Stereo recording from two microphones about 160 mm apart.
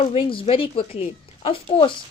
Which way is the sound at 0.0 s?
35° left (ahead or behind).